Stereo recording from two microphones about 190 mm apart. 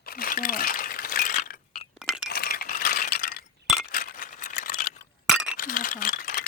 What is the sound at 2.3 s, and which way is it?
Ratchet, 50° left (ahead or behind).